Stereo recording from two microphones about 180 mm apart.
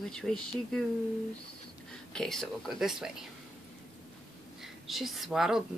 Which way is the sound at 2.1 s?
5° left (ahead or behind).